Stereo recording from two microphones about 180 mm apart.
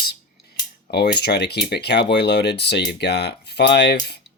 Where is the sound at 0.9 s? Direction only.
65° left (ahead or behind).